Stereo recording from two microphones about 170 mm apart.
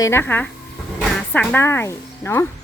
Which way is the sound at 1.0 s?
10° left (ahead or behind).